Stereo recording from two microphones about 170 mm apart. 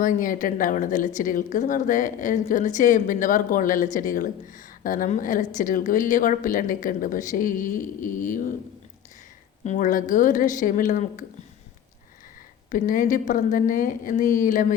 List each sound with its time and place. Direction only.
0.0 s a woman's voice: 50° left (ahead or behind)
9.6 s a woman's voice: 50° left (ahead or behind)
12.7 s a woman's voice: 50° left (ahead or behind)